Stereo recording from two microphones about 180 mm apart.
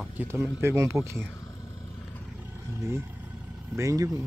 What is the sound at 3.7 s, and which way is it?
Speech, 20° right (ahead or behind).